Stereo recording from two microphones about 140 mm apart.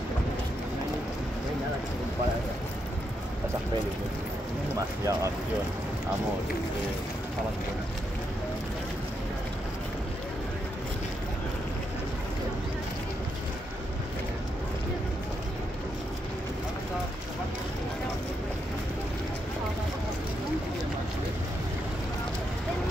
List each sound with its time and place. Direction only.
4.7 s speech: 20° right (ahead or behind)